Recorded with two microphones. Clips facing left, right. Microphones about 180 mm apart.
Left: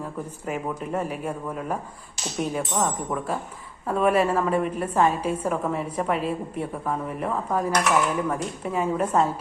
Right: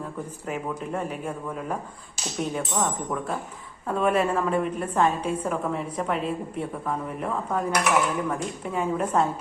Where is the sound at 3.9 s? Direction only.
5° left (ahead or behind).